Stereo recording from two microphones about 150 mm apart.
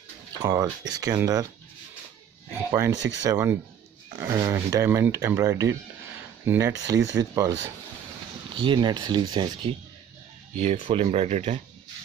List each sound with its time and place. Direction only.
0.4 s speech: 25° right (ahead or behind)
2.7 s speech: 20° right (ahead or behind)
8.5 s speech: 30° right (ahead or behind)
10.6 s speech: 50° right (ahead or behind)